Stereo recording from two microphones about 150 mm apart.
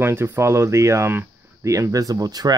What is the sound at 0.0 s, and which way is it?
Speech, 15° right (ahead or behind).